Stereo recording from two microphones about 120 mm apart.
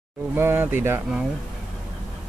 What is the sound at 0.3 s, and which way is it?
Speech, 20° right (ahead or behind).